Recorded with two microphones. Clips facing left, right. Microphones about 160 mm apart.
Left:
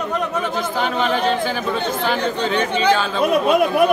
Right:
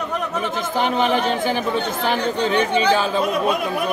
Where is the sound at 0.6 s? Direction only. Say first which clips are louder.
Right 3 dB; 15° right (ahead or behind).